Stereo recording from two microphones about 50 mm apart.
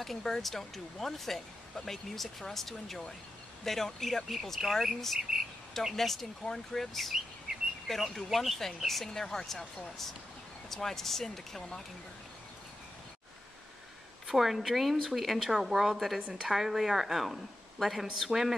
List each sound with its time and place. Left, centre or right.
0.0 s speech: centre
14.2 s speech: centre
16.2 s a woman's voice: right
16.4 s speech: centre